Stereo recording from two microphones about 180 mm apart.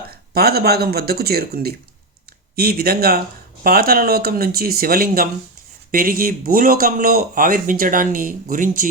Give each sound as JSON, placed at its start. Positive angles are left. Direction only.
{"t": 0.3, "sound": "speech", "side_deg": -60}